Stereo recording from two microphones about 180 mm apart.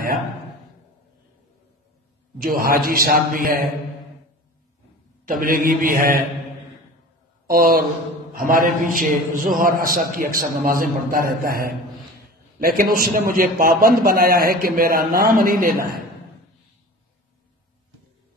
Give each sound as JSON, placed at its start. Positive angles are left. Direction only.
{"t": 2.3, "sound": "a man's voice", "side_deg": -55}
{"t": 5.2, "sound": "a man's voice", "side_deg": -50}
{"t": 7.4, "sound": "a man's voice", "side_deg": -55}